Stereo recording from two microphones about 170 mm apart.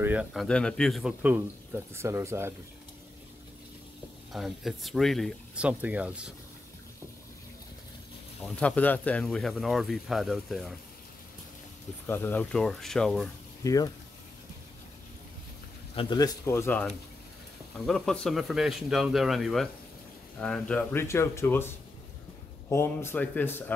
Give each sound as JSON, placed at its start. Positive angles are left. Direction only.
{"t": 0.0, "sound": "speech", "side_deg": -10}
{"t": 4.3, "sound": "speech", "side_deg": 0}
{"t": 8.4, "sound": "speech", "side_deg": 10}
{"t": 12.1, "sound": "speech", "side_deg": 10}
{"t": 13.7, "sound": "speech", "side_deg": 20}
{"t": 16.0, "sound": "speech", "side_deg": 25}
{"t": 16.4, "sound": "speech", "side_deg": 15}